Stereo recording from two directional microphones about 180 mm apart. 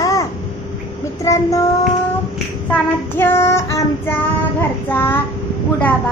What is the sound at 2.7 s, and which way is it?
Child singing, 10° left (ahead or behind).